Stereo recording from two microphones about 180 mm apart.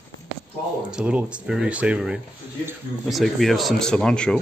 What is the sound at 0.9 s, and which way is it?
Speech, 5° right (ahead or behind).